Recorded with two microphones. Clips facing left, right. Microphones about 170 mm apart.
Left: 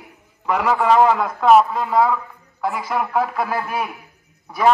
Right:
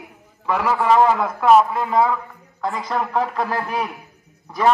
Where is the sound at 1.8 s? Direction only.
15° right (ahead or behind).